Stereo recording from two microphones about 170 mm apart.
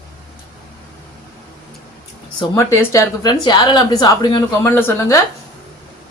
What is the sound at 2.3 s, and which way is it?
A woman's voice, 15° left (ahead or behind).